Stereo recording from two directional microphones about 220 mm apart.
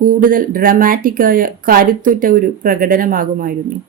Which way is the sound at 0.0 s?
40° right (ahead or behind).